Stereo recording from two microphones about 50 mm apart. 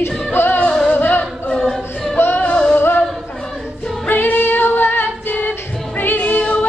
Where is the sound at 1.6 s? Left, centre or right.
Centre.